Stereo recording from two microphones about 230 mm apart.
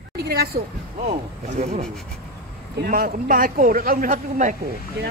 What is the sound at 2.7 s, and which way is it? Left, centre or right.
Speech, right.